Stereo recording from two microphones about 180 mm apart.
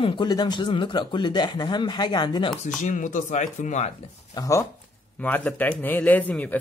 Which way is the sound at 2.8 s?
45° left (ahead or behind).